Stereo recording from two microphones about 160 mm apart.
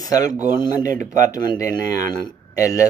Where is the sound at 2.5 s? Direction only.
20° left (ahead or behind).